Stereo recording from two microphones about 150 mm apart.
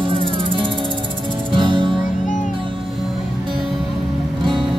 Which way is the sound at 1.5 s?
30° right (ahead or behind).